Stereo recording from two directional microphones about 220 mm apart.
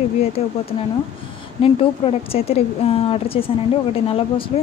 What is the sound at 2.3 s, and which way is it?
Speech, 25° left (ahead or behind).